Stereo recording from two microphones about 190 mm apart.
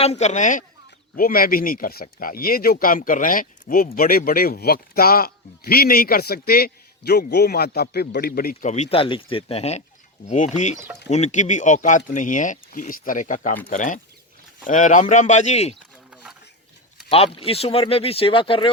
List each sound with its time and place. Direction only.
0.0 s speech: 35° left (ahead or behind); by 8.7 s 50° left (ahead or behind)
8.7 s speech: 35° left (ahead or behind)
16.0 s a sound: 5° right (ahead or behind)
17.1 s speech: 30° left (ahead or behind)